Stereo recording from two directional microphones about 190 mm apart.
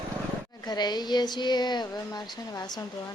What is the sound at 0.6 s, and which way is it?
A woman's voice, 20° left (ahead or behind).